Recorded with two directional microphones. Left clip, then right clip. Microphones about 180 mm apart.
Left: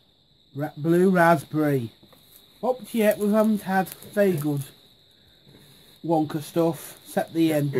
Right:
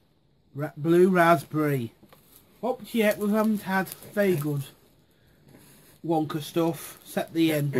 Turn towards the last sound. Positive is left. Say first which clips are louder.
# left 2 dB
turn(degrees=30)  # may be behind; listen again after turning